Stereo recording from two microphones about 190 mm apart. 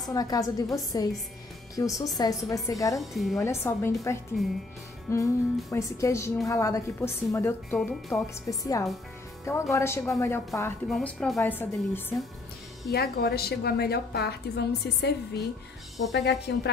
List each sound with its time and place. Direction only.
0.1 s a woman's voice: 20° left (ahead or behind)
3.0 s a woman's voice: centre (ahead or behind)
3.3 s a woman's voice: 15° left (ahead or behind)
4.4 s a woman's voice: centre (ahead or behind)
5.1 s a woman's voice: 15° left (ahead or behind)
10.9 s a woman's voice: 5° left (ahead or behind)
12.9 s a woman's voice: 55° left (ahead or behind)